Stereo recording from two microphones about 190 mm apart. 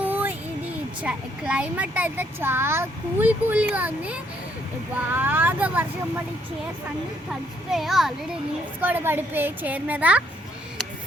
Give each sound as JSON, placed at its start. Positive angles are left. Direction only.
{"t": 0.0, "sound": "a sound", "side_deg": -10}
{"t": 1.0, "sound": "speech", "side_deg": -5}
{"t": 7.3, "sound": "a child's voice", "side_deg": 0}